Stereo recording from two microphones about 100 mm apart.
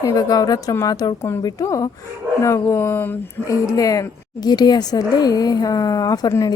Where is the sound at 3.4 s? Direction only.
35° left (ahead or behind).